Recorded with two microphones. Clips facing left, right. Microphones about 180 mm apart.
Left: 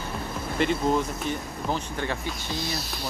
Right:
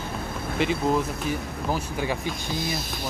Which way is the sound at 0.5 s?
Centre (ahead or behind).